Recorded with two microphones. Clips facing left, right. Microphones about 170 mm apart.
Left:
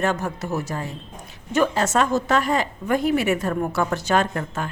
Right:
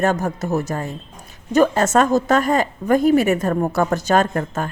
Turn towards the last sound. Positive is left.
turn(degrees=-45)  # may be behind; listen again after turning